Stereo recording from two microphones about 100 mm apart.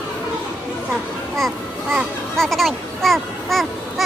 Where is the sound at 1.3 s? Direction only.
Centre (ahead or behind).